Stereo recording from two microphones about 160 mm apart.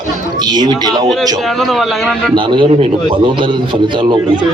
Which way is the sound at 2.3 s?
30° right (ahead or behind).